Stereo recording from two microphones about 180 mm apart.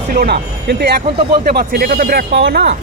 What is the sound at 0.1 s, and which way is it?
Speech, 60° right (ahead or behind).